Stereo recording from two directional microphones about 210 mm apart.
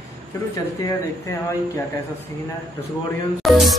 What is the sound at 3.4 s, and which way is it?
Music, centre (ahead or behind).